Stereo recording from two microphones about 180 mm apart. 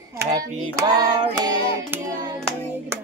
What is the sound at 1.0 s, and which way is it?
Child singing, 20° right (ahead or behind).